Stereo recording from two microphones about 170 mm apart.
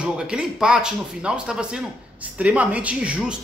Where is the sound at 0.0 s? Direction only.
5° right (ahead or behind).